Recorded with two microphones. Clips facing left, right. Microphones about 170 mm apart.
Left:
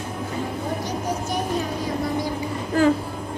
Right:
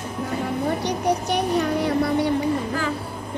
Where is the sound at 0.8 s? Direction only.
70° right (ahead or behind).